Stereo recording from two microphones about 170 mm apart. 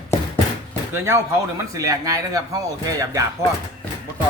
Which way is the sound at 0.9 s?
15° right (ahead or behind).